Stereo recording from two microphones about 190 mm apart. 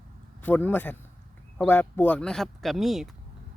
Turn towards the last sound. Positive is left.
turn(degrees=0)  # may be behind; listen again after turning